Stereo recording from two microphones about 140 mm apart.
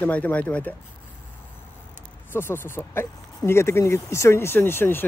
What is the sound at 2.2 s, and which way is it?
Speech, 15° left (ahead or behind).